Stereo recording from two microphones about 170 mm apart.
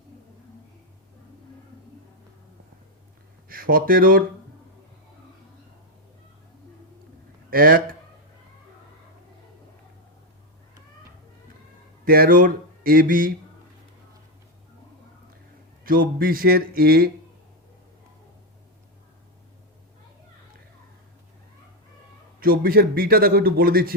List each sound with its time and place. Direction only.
3.5 s a man's voice: 60° right (ahead or behind)
7.5 s a sound: 60° right (ahead or behind)
12.0 s speech: 60° right (ahead or behind)
15.8 s a man's voice: 60° right (ahead or behind)
22.4 s a man's voice: 60° right (ahead or behind)